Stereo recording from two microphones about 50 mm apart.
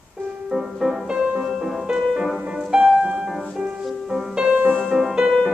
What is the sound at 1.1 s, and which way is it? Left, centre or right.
Music, centre.